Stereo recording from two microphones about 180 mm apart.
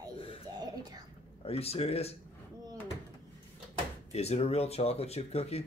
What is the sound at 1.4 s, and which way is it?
Speech, 35° left (ahead or behind).